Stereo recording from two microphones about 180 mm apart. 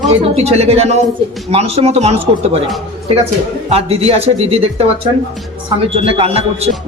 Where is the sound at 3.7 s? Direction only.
35° right (ahead or behind).